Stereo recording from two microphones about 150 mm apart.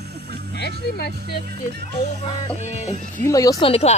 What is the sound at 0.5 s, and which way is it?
Speech, 90° left.